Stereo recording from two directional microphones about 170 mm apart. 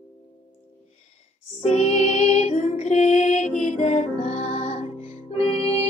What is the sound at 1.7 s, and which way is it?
Music, 40° left (ahead or behind).